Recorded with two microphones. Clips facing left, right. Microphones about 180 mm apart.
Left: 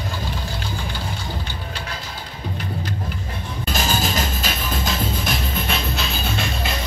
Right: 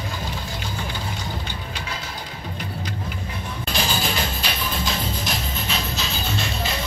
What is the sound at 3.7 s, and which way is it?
Music, 45° left (ahead or behind).